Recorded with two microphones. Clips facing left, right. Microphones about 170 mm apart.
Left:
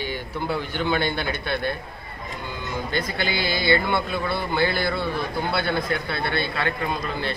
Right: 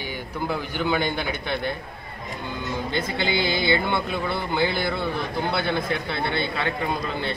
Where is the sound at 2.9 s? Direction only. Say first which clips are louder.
Right 1 dB; 20° right (ahead or behind).